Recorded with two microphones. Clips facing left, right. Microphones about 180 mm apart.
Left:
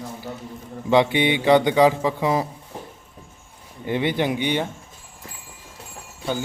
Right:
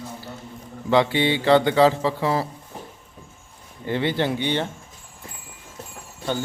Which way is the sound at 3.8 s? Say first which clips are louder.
Left 1 dB; 15° left (ahead or behind).